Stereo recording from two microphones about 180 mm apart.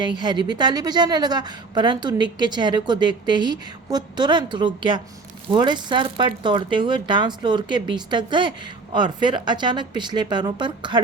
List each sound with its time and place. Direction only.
0.0 s speech: 25° right (ahead or behind)